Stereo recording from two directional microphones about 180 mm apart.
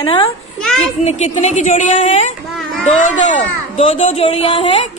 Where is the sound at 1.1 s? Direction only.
40° left (ahead or behind).